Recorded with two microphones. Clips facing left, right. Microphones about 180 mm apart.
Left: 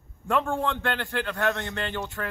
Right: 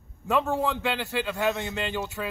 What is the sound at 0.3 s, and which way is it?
A man's voice, 5° right (ahead or behind).